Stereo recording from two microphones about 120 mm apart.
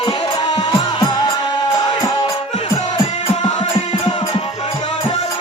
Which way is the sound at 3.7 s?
40° left (ahead or behind).